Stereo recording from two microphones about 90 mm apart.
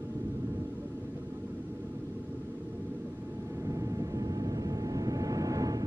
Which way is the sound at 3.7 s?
40° right (ahead or behind).